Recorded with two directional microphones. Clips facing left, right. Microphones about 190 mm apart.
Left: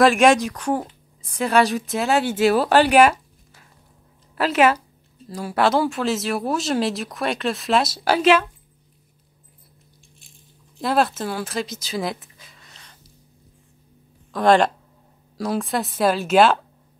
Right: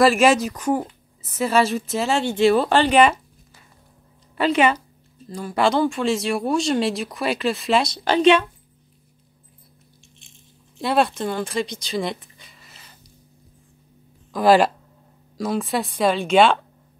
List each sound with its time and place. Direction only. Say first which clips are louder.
0.0 s speech: left 1 dB; centre (ahead or behind)
4.4 s speech: left 1 dB; centre (ahead or behind)
10.8 s speech: even; centre (ahead or behind)
14.3 s speech: right 1 dB; 5° right (ahead or behind)